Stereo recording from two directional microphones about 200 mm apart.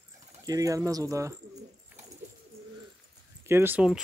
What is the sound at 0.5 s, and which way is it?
Speech, 15° right (ahead or behind).